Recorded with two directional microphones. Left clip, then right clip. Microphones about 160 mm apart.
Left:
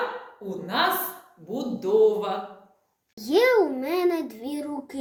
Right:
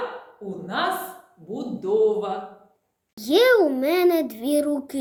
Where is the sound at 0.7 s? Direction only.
20° right (ahead or behind); by 4.9 s 45° right (ahead or behind).